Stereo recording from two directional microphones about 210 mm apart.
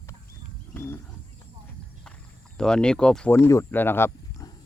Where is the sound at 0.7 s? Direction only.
10° left (ahead or behind).